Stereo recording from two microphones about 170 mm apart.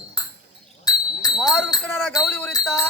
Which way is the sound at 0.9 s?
20° left (ahead or behind).